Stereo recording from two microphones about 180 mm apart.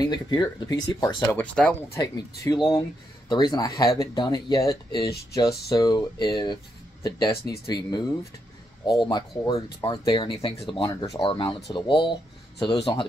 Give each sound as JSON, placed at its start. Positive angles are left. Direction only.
{"t": 0.0, "sound": "speech", "side_deg": 25}
{"t": 1.4, "sound": "speech", "side_deg": 5}
{"t": 2.0, "sound": "speech", "side_deg": 20}
{"t": 10.8, "sound": "speech", "side_deg": 20}